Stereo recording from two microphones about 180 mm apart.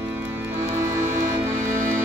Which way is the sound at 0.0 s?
10° right (ahead or behind).